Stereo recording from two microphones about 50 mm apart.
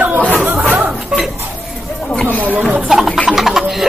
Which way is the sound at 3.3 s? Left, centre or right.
Centre.